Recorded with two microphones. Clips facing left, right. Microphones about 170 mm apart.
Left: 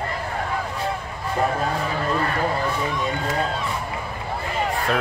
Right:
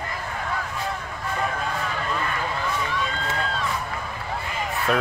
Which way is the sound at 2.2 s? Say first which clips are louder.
Left 5 dB; 40° left (ahead or behind).